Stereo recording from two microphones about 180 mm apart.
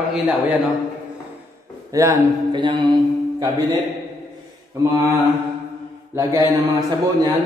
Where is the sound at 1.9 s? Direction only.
20° right (ahead or behind).